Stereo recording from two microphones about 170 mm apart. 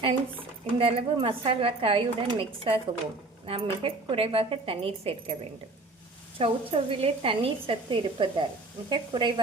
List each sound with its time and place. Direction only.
0.0 s speech: 30° right (ahead or behind)
6.4 s a woman's voice: 35° right (ahead or behind)